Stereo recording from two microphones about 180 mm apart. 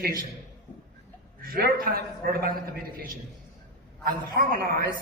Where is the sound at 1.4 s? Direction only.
55° right (ahead or behind).